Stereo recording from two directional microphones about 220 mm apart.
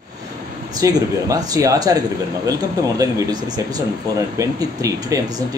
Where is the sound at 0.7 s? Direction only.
15° right (ahead or behind).